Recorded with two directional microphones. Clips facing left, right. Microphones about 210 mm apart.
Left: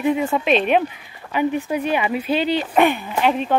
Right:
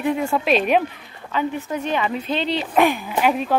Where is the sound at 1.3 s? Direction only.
15° left (ahead or behind); by 3.4 s 5° right (ahead or behind).